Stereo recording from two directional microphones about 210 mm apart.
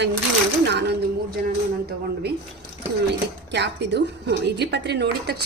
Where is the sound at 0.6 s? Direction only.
55° right (ahead or behind).